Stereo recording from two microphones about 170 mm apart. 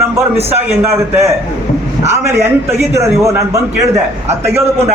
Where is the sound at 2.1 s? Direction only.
15° right (ahead or behind).